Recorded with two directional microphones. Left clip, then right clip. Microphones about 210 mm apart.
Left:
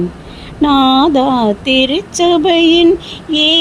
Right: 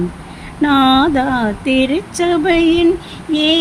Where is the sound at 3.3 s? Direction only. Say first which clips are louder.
Left 3 dB; 10° left (ahead or behind).